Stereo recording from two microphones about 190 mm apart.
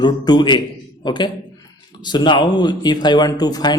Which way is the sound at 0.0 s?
25° left (ahead or behind).